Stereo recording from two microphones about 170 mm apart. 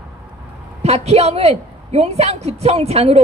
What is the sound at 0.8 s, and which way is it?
A woman's voice, 40° right (ahead or behind).